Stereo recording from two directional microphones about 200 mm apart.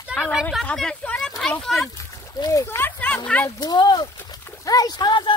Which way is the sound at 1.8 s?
15° left (ahead or behind).